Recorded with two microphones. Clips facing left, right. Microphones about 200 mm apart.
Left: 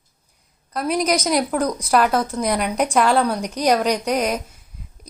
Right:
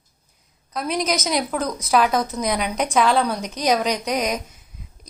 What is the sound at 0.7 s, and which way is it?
A woman's voice, 5° left (ahead or behind).